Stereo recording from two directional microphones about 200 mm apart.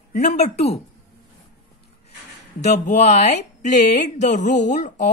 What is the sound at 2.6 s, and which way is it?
A woman's voice, 35° left (ahead or behind).